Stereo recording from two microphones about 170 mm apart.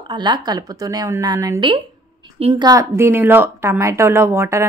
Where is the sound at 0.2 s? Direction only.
25° right (ahead or behind).